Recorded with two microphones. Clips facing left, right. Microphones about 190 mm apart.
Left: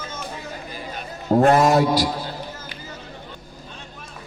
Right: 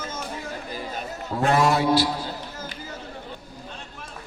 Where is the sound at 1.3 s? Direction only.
45° left (ahead or behind).